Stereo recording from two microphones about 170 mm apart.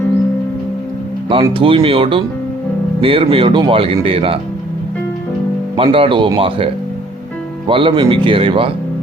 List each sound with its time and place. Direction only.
1.3 s speech: 30° right (ahead or behind)
5.7 s speech: 30° right (ahead or behind)
7.7 s speech: 30° right (ahead or behind)